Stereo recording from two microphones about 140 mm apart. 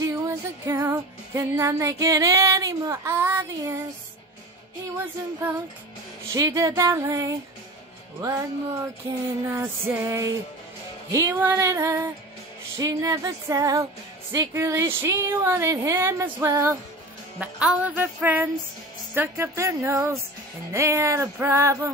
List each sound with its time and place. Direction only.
0.0 s music: 20° right (ahead or behind)
4.9 s a sound: 15° right (ahead or behind)
6.3 s speech: 25° right (ahead or behind)
9.6 s speech: 20° right (ahead or behind)
17.4 s a sound: 10° right (ahead or behind)
19.1 s speech: 15° right (ahead or behind)